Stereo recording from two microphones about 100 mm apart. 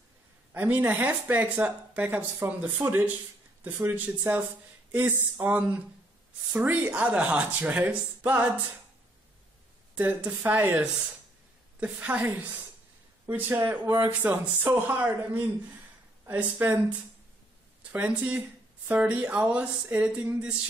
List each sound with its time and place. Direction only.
0.5 s a man's voice: 15° right (ahead or behind)
9.9 s a man's voice: 15° right (ahead or behind)
17.9 s speech: 15° right (ahead or behind)